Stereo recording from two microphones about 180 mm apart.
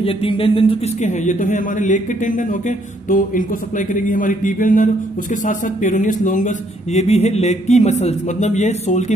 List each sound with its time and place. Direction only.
0.0 s speech: 30° left (ahead or behind)
1.1 s a man's voice: 45° left (ahead or behind)